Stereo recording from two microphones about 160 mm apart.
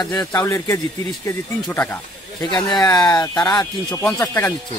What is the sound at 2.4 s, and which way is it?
Speech, 25° left (ahead or behind).